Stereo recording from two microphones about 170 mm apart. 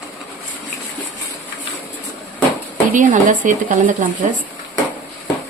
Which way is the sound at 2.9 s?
50° right (ahead or behind).